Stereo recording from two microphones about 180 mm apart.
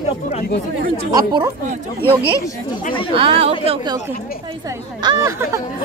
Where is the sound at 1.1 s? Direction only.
25° right (ahead or behind).